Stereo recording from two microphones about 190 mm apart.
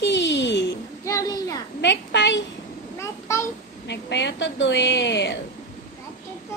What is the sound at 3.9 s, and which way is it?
A woman's voice, 65° left (ahead or behind).